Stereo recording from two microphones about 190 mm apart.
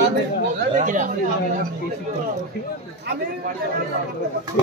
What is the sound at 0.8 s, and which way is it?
Speech, 40° right (ahead or behind).